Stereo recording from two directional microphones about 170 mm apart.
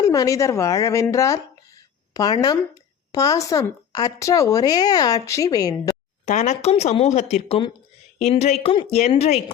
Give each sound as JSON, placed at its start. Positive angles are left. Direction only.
{"t": 0.0, "sound": "speech", "side_deg": 20}
{"t": 6.2, "sound": "speech", "side_deg": 45}